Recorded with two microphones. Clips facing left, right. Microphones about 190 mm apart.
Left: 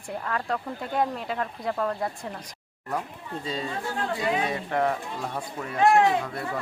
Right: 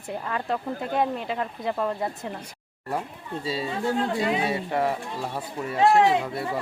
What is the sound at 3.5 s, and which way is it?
Speech, 10° right (ahead or behind).